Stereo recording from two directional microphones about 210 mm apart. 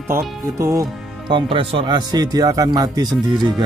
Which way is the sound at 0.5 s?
15° right (ahead or behind).